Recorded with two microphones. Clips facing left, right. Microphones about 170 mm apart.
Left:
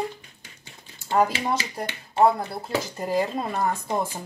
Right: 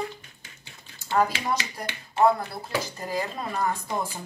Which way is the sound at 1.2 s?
20° left (ahead or behind).